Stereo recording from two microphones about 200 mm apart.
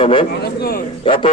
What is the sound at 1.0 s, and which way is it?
Speech, 25° left (ahead or behind).